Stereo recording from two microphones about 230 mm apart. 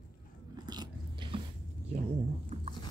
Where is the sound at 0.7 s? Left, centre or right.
Centre.